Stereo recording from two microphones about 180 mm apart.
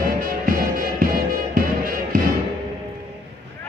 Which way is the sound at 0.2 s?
50° right (ahead or behind).